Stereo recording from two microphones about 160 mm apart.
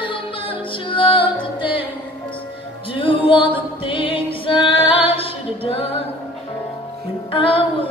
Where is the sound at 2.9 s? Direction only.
35° left (ahead or behind).